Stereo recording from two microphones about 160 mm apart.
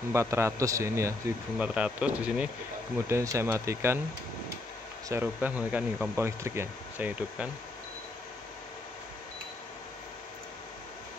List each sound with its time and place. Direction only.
0.1 s speech: 15° right (ahead or behind)
1.6 s speech: 5° right (ahead or behind)
3.1 s speech: 20° right (ahead or behind)
5.1 s speech: 10° right (ahead or behind)